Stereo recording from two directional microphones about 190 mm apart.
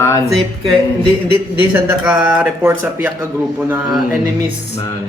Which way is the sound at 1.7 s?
5° right (ahead or behind).